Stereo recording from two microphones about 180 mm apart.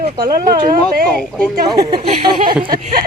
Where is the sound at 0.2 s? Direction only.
20° right (ahead or behind).